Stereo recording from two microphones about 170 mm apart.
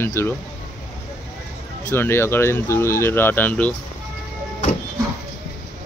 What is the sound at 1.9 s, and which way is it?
Speech, 15° left (ahead or behind).